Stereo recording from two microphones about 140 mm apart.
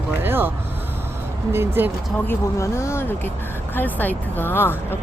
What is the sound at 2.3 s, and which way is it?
Speech, 20° left (ahead or behind).